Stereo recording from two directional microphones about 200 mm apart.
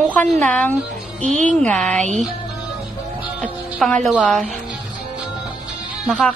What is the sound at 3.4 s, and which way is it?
Speech, centre (ahead or behind).